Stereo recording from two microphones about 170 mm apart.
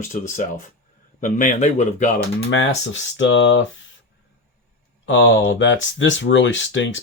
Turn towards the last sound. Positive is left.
turn(degrees=90)